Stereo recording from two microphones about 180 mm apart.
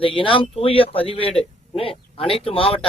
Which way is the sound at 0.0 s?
30° left (ahead or behind).